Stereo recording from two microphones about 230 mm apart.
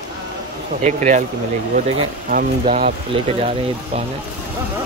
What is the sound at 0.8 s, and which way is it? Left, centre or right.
Speech, right.